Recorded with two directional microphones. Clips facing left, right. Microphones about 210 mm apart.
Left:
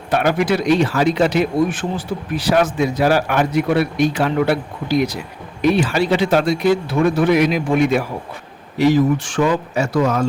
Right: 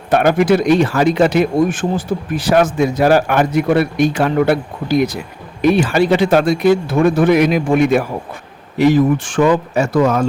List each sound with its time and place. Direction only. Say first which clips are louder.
0.1 s speech: right 5 dB; 50° right (ahead or behind)